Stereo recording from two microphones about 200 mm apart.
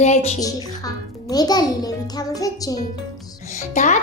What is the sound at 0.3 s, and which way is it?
A woman's voice, 20° left (ahead or behind).